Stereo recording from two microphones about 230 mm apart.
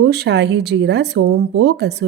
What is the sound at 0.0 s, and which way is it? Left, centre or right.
A woman's voice, right.